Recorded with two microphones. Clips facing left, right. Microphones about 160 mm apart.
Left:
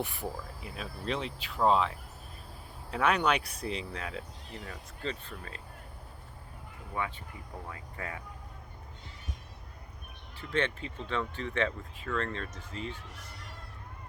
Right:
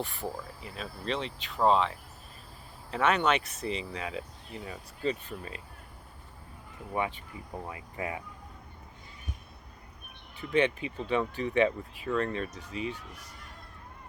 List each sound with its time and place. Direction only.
0.6 s speech: 5° left (ahead or behind); by 5.6 s 15° right (ahead or behind)
6.9 s speech: 20° right (ahead or behind)
10.5 s speech: 15° right (ahead or behind)